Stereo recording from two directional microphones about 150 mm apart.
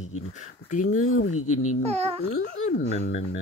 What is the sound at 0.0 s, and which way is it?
Speech, 55° left (ahead or behind).